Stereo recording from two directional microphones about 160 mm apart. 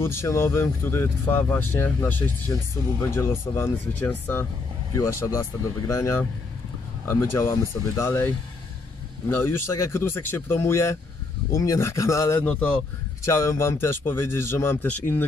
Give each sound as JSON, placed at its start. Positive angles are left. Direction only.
{"t": 0.0, "sound": "speech", "side_deg": 15}
{"t": 9.3, "sound": "speech", "side_deg": 15}